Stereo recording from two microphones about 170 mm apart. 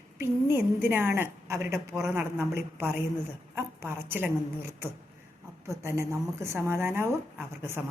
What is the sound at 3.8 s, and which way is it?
Speech, 10° right (ahead or behind).